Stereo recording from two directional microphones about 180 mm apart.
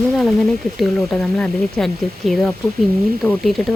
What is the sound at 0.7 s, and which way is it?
Speech, 5° left (ahead or behind).